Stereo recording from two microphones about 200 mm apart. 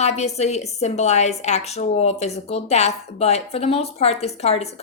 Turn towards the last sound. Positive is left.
turn(degrees=30)  # may be behind; listen again after turning